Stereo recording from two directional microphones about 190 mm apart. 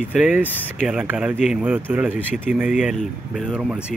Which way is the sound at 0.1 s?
5° right (ahead or behind).